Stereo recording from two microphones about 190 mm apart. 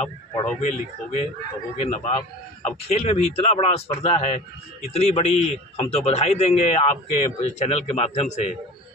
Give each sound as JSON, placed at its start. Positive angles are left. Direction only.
{"t": 0.6, "sound": "a man's voice", "side_deg": 40}